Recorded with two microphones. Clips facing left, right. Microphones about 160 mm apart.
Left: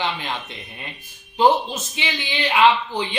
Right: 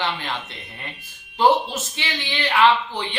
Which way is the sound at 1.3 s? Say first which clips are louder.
Left 1 dB; 15° left (ahead or behind).